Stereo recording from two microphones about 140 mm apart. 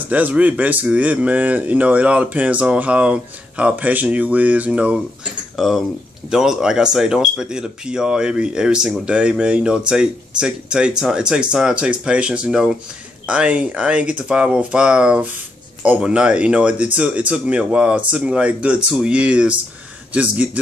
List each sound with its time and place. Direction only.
0.1 s speech: 10° right (ahead or behind)